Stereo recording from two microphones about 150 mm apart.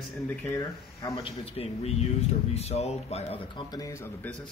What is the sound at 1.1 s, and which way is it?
Speech, 40° left (ahead or behind).